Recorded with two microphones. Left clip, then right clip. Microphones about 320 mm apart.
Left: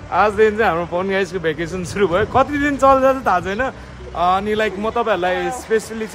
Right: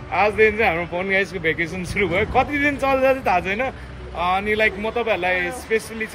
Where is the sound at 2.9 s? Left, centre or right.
Left.